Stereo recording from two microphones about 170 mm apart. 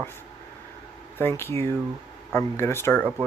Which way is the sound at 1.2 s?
15° left (ahead or behind).